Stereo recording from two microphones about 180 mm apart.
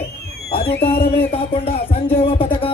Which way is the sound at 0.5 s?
60° left (ahead or behind).